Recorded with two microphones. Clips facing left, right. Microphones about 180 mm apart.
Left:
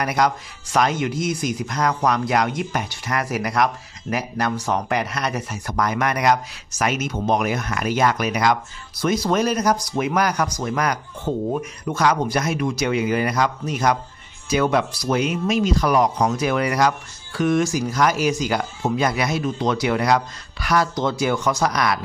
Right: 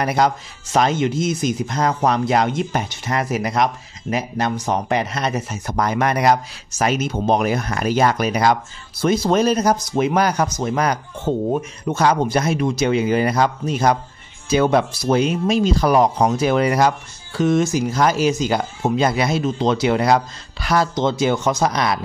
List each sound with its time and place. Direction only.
0.0 s speech: 30° right (ahead or behind)